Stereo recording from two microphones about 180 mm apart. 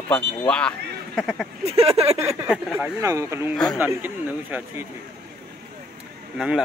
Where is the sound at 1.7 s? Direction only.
35° right (ahead or behind).